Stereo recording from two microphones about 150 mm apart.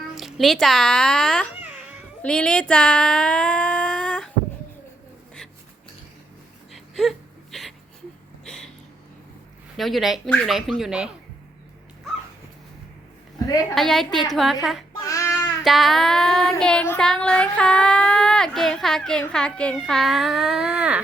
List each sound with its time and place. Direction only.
0.2 s child singing: centre (ahead or behind)
2.2 s speech: 5° left (ahead or behind)
6.7 s whimper: centre (ahead or behind)
8.4 s a sound: 5° left (ahead or behind)
9.7 s child singing: centre (ahead or behind)
13.7 s child singing: centre (ahead or behind)
15.0 s child singing: 20° left (ahead or behind)
15.6 s child singing: centre (ahead or behind)